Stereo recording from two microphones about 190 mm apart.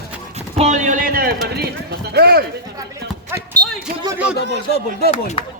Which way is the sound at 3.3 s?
15° right (ahead or behind).